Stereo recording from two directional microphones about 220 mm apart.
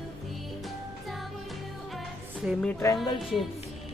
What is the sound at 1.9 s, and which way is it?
Music, centre (ahead or behind).